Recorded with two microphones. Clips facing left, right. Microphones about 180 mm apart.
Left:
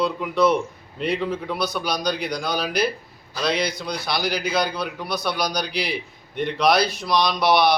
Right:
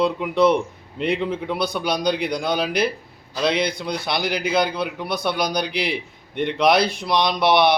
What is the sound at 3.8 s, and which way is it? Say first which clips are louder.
A man's voice: right 2 dB; 25° right (ahead or behind).